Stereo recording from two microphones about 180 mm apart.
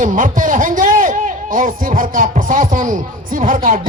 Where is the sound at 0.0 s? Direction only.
50° right (ahead or behind).